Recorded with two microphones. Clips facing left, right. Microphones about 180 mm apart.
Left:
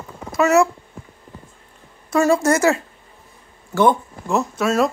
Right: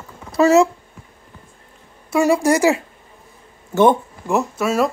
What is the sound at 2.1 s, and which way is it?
Speech, 15° right (ahead or behind).